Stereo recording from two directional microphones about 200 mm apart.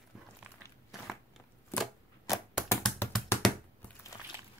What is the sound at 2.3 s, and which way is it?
Typewriter, 15° left (ahead or behind).